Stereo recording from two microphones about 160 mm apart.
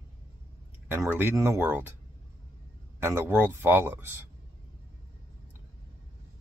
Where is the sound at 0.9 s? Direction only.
15° right (ahead or behind).